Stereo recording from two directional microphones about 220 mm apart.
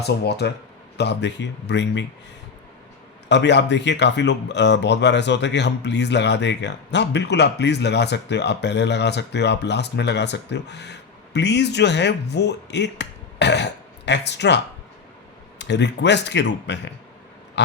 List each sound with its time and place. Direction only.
0.0 s speech: 50° left (ahead or behind)
3.2 s speech: 50° left (ahead or behind)